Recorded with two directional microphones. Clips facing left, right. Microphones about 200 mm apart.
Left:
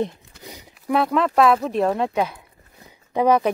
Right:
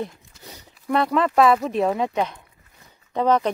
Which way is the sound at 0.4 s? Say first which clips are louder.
Left 3 dB; 15° left (ahead or behind).